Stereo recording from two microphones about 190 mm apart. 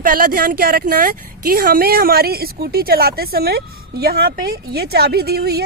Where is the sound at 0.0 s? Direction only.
50° right (ahead or behind).